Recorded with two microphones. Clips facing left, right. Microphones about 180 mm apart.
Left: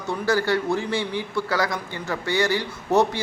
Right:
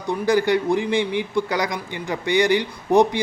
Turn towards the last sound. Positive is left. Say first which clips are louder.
# right 3 dB
turn(degrees=-15)  # may be behind; listen again after turning